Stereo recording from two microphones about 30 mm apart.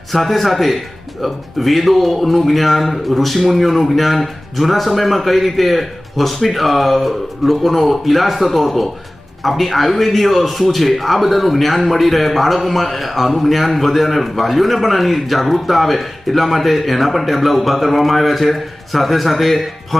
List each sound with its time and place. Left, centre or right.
0.1 s a man's voice: centre